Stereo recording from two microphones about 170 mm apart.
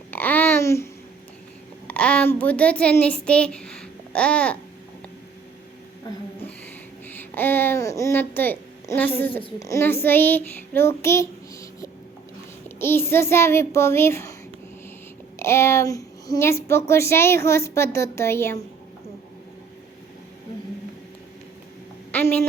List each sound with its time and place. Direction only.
0.1 s babbling: 10° left (ahead or behind)
1.9 s a child's voice: 5° left (ahead or behind)
7.2 s a child's voice: 10° left (ahead or behind)
12.6 s a child's voice: 15° left (ahead or behind)
15.4 s a child's voice: 15° left (ahead or behind)
22.1 s a woman's voice: 10° left (ahead or behind)